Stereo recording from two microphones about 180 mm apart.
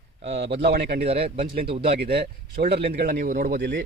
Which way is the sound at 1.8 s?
65° right (ahead or behind).